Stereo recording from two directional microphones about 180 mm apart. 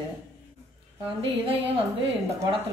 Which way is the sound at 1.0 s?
30° right (ahead or behind).